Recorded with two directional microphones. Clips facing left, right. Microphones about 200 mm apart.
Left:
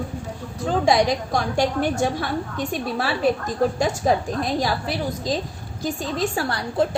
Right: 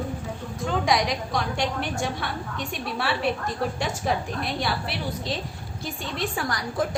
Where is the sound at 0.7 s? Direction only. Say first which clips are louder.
Left 5 dB; 35° left (ahead or behind).